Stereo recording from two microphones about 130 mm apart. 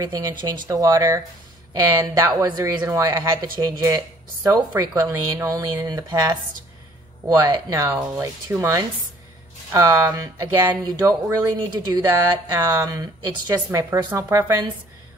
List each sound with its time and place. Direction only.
0.0 s speech: 30° right (ahead or behind)